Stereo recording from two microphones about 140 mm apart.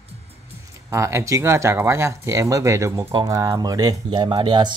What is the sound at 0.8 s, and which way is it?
Speech, 20° right (ahead or behind).